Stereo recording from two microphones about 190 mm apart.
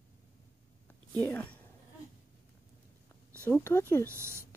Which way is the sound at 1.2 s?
10° left (ahead or behind).